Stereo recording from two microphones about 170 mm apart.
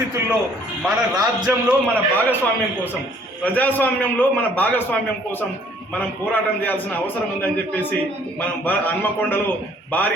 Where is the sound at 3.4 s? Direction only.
10° left (ahead or behind).